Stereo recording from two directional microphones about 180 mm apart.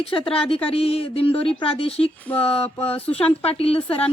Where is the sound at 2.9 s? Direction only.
30° left (ahead or behind).